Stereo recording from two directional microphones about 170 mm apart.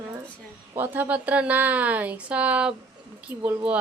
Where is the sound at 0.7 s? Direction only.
10° right (ahead or behind).